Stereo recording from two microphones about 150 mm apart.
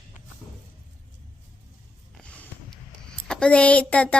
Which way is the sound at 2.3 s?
10° left (ahead or behind).